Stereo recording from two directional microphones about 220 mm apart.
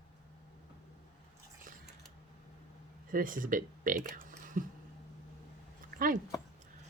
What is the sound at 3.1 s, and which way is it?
Speech, 40° right (ahead or behind).